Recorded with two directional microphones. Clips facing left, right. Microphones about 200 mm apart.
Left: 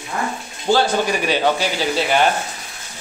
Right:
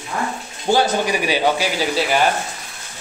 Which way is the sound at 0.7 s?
15° right (ahead or behind).